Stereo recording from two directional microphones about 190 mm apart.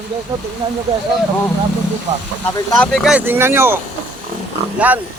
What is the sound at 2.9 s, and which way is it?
Speech, centre (ahead or behind).